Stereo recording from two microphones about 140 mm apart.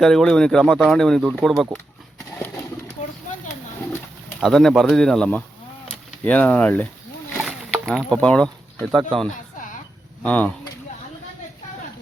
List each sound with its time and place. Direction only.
0.0 s speech: centre (ahead or behind)
2.3 s pigeon: 15° left (ahead or behind)
4.4 s speech: centre (ahead or behind)
7.4 s a sound: centre (ahead or behind)
9.0 s speech: 35° right (ahead or behind)
10.2 s speech: 10° left (ahead or behind)